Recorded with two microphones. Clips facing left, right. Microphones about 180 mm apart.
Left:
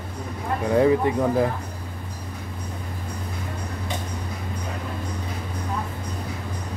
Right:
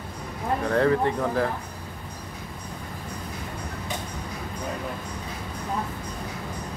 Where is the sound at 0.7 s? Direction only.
15° left (ahead or behind).